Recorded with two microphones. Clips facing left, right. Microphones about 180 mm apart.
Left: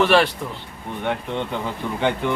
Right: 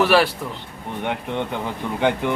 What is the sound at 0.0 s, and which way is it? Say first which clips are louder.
Speech: even; 5° right (ahead or behind).